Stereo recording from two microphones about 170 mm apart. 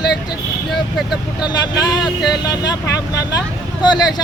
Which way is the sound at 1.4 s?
25° left (ahead or behind).